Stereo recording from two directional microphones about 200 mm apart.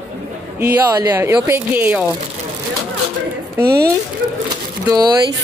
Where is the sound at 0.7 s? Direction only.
15° right (ahead or behind).